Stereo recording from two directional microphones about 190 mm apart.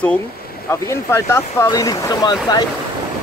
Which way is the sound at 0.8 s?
15° left (ahead or behind).